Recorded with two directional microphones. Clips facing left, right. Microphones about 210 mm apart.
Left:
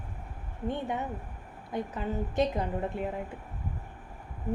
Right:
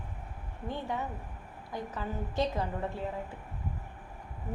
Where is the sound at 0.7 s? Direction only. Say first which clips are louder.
Left 1 dB; 20° left (ahead or behind).